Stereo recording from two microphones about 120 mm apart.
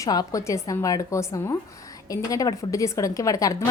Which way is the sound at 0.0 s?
30° left (ahead or behind).